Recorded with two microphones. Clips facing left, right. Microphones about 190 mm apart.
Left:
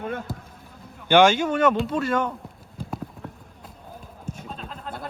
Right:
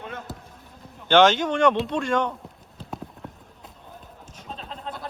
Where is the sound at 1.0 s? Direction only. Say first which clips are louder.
Even; 10° left (ahead or behind).